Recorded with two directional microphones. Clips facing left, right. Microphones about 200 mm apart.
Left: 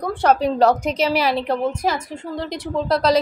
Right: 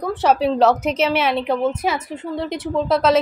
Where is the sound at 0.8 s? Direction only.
35° left (ahead or behind).